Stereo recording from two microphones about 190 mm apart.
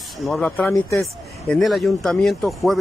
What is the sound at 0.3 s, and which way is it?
Speech, 5° left (ahead or behind).